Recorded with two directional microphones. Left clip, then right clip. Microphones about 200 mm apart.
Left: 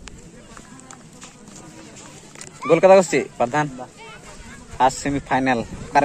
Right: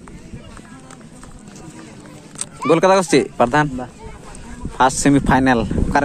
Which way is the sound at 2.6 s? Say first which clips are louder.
Left 1 dB; 15° right (ahead or behind).